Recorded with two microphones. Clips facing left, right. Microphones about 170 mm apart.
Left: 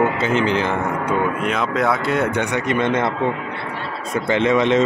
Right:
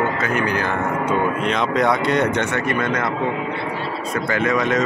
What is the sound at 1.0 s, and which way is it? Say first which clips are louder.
A man's voice: right 2 dB; 10° left (ahead or behind).